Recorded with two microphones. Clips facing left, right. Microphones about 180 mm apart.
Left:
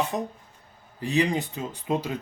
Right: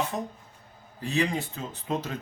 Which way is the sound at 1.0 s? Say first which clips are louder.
Left 3 dB; 15° left (ahead or behind).